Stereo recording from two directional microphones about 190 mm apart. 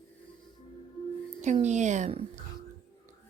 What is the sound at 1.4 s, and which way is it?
Speech, 35° right (ahead or behind).